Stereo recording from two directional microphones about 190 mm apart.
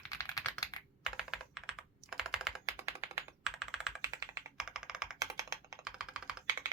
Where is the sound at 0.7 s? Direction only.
20° left (ahead or behind).